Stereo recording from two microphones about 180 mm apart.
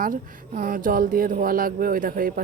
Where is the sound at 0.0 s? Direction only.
50° right (ahead or behind).